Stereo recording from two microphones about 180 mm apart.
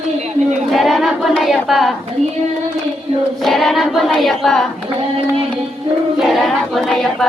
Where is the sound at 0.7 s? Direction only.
Centre (ahead or behind).